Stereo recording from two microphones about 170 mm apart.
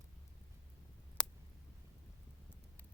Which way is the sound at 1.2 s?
5° left (ahead or behind).